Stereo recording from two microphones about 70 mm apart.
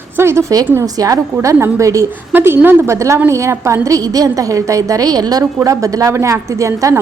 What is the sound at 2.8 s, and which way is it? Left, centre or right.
A woman's voice, right.